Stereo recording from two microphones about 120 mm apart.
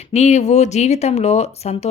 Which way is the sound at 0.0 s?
70° left (ahead or behind).